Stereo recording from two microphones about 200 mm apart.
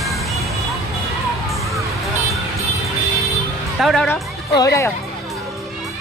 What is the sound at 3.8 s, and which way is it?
Speech, 5° left (ahead or behind).